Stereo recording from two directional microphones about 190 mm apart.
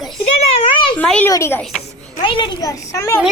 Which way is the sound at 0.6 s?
25° left (ahead or behind).